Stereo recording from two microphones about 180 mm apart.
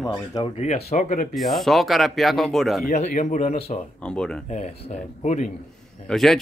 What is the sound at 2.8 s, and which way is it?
Speech, 45° left (ahead or behind).